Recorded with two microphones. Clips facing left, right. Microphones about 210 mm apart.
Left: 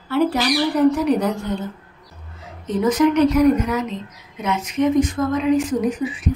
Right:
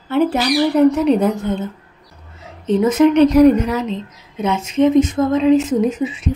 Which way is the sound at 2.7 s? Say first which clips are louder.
Right 4 dB; 25° right (ahead or behind).